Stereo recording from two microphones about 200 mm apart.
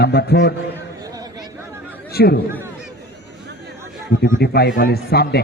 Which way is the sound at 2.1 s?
50° left (ahead or behind).